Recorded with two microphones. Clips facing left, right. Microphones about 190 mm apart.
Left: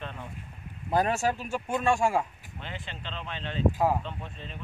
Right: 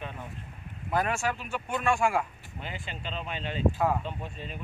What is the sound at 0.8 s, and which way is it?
Speech, 35° left (ahead or behind).